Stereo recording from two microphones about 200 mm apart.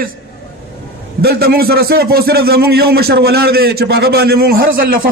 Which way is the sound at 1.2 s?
50° right (ahead or behind).